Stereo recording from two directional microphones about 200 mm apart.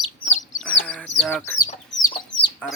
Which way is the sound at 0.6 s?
5° left (ahead or behind).